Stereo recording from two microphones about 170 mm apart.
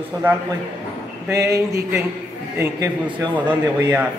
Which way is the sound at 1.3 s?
20° right (ahead or behind).